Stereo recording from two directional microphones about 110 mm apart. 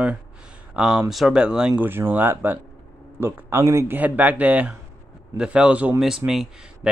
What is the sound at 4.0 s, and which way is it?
Speech, 15° right (ahead or behind).